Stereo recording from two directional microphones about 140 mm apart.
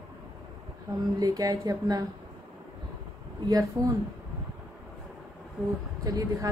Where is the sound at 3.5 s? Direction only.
25° right (ahead or behind).